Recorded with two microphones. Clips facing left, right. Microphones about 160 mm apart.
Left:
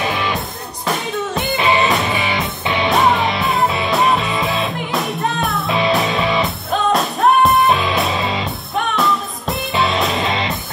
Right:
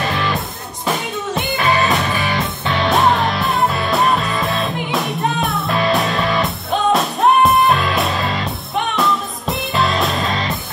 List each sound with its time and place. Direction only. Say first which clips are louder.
0.0 s music: even; 5° left (ahead or behind)
1.6 s music: left 1 dB; 20° left (ahead or behind)
2.2 s music: even; centre (ahead or behind)